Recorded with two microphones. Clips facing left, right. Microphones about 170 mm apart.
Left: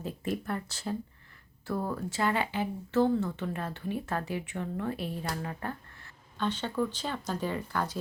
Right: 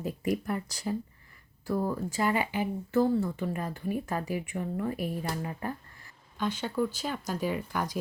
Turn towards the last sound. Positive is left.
turn(degrees=-15)  # may be behind; listen again after turning